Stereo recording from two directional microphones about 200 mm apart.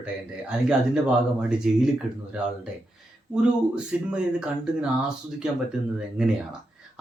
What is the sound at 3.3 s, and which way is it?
Speech, 5° right (ahead or behind).